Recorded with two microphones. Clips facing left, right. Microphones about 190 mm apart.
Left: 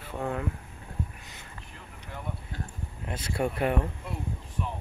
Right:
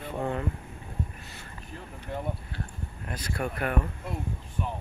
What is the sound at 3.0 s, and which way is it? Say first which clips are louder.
Speech: left 3 dB; 25° left (ahead or behind).